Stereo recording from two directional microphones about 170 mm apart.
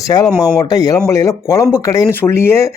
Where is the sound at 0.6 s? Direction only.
20° left (ahead or behind).